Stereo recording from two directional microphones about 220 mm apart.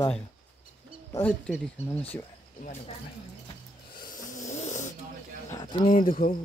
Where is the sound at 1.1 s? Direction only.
5° left (ahead or behind).